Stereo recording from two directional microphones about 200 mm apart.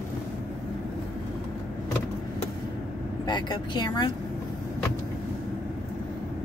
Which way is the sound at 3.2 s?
20° left (ahead or behind).